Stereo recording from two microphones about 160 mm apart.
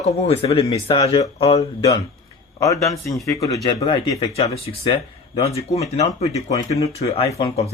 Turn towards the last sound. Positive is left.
turn(degrees=40)  # may be behind; listen again after turning